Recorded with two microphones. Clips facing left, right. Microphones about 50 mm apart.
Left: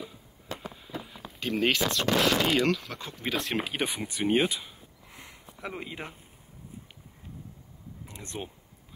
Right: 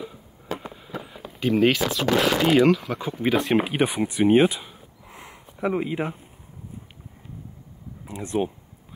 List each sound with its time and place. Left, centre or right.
1.0 s speech: centre
4.1 s a sound: centre
8.1 s speech: centre